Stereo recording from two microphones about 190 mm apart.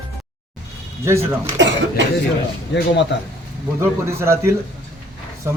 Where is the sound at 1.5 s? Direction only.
70° right (ahead or behind).